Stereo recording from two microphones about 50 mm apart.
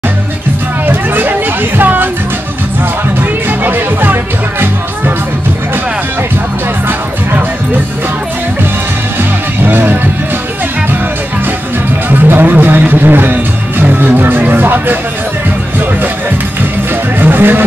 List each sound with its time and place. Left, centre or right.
0.8 s a sound: right
1.8 s music: right
3.2 s music: right
9.6 s music: right
12.1 s speech: right
17.2 s speech: right